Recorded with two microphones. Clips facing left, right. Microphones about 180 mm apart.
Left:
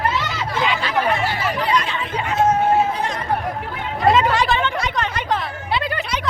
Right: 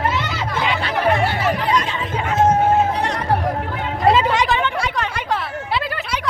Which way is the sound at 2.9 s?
70° right (ahead or behind).